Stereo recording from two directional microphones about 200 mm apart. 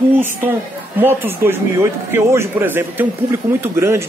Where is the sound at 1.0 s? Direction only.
10° right (ahead or behind).